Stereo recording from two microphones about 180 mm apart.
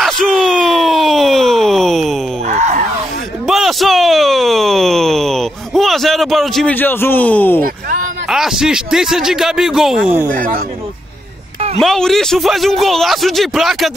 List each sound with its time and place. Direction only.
0.0 s groan: centre (ahead or behind)
2.4 s a sound: 40° right (ahead or behind)
3.4 s a sound: centre (ahead or behind)
8.3 s a man's voice: 5° right (ahead or behind)
10.3 s speech: 50° right (ahead or behind)
11.8 s a man's voice: centre (ahead or behind)